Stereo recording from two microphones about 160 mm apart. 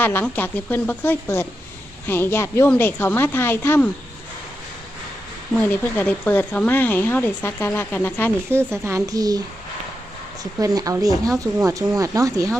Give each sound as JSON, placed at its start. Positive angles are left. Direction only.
{"t": 0.0, "sound": "speech", "side_deg": 10}
{"t": 5.5, "sound": "speech", "side_deg": 0}
{"t": 8.4, "sound": "a woman's voice", "side_deg": -15}
{"t": 10.6, "sound": "speech", "side_deg": -20}